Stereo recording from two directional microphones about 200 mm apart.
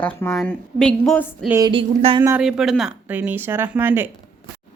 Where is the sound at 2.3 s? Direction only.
5° right (ahead or behind).